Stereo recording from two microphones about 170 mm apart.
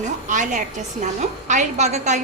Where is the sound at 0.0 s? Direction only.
45° right (ahead or behind).